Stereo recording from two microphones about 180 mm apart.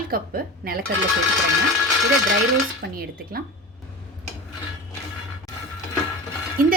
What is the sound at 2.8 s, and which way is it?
Speech, 55° right (ahead or behind).